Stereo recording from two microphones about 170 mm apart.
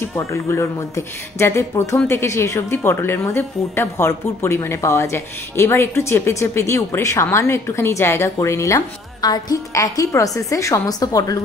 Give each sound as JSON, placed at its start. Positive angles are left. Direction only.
{"t": 0.0, "sound": "speech", "side_deg": 15}